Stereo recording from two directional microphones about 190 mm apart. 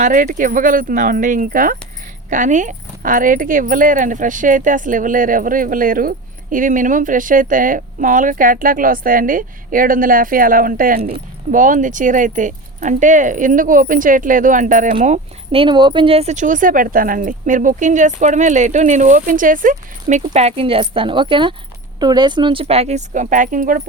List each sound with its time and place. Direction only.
0.0 s speech: 45° right (ahead or behind)